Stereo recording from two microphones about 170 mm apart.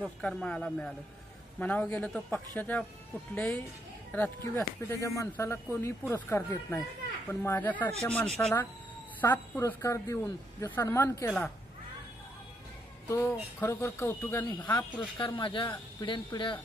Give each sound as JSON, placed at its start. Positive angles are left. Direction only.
{"t": 0.0, "sound": "speech", "side_deg": 5}
{"t": 13.1, "sound": "speech", "side_deg": 15}